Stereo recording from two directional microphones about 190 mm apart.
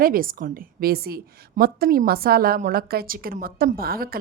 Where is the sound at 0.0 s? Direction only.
50° right (ahead or behind).